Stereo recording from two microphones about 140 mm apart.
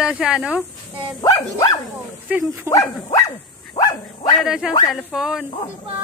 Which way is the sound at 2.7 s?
20° right (ahead or behind).